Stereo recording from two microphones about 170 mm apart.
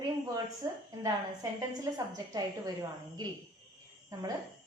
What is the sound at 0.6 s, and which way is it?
Speech, 20° right (ahead or behind).